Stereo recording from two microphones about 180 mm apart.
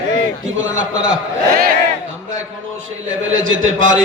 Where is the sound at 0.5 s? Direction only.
90° right.